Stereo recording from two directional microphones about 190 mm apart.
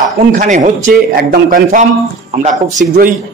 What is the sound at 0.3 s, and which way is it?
A man's voice, 45° right (ahead or behind).